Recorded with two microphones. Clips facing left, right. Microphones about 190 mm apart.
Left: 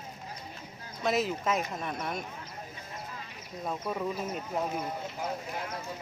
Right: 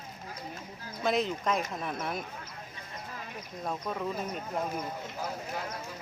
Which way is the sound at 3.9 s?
5° left (ahead or behind).